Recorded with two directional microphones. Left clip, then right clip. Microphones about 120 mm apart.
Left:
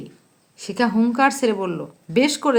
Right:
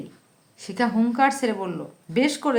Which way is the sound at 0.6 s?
35° left (ahead or behind).